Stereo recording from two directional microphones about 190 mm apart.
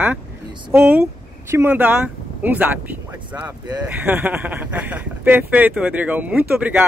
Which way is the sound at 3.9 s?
10° right (ahead or behind).